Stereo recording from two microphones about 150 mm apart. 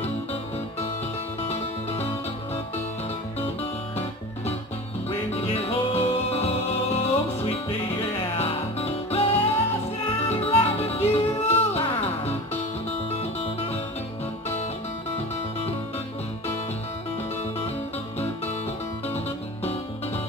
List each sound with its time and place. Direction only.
0.0 s music: 45° left (ahead or behind)
5.3 s music: 40° left (ahead or behind)
13.1 s music: 40° left (ahead or behind)